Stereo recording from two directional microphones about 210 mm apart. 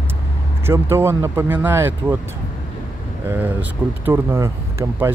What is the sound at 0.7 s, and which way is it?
Speech, 10° right (ahead or behind).